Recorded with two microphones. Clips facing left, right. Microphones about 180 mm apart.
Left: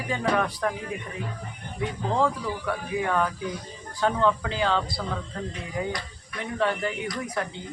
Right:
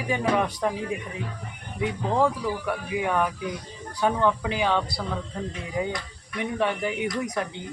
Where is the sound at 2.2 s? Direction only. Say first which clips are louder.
Right 2 dB; 15° right (ahead or behind).